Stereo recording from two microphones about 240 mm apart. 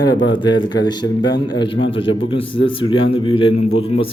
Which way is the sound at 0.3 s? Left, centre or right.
Centre.